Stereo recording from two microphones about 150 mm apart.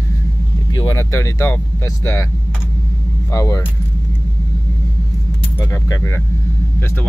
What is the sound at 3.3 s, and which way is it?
Speech, 20° left (ahead or behind).